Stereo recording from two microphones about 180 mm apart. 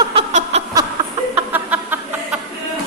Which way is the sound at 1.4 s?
10° right (ahead or behind).